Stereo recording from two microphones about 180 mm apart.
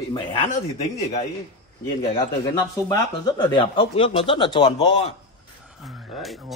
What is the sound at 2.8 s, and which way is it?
Speech, 25° left (ahead or behind).